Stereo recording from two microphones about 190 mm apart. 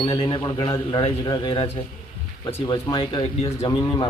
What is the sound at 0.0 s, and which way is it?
A man's voice, 25° left (ahead or behind).